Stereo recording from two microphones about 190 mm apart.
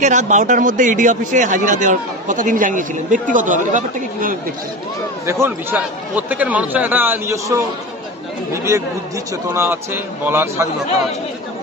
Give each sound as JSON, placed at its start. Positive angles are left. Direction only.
{"t": 0.0, "sound": "speech", "side_deg": -40}
{"t": 5.2, "sound": "speech", "side_deg": -15}
{"t": 9.5, "sound": "speech", "side_deg": -10}